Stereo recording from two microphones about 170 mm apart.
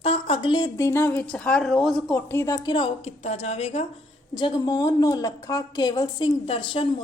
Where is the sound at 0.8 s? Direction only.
15° left (ahead or behind).